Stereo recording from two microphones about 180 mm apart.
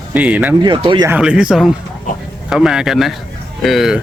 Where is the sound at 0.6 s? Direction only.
25° right (ahead or behind).